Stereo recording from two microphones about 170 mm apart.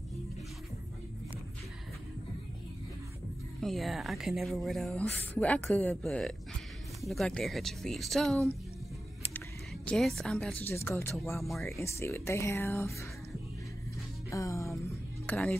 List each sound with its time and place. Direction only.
3.6 s speech: centre (ahead or behind)
9.8 s speech: centre (ahead or behind)
11.3 s speech: centre (ahead or behind)
11.7 s speech: 15° left (ahead or behind)
14.3 s music: 20° left (ahead or behind)
15.2 s speech: 5° left (ahead or behind)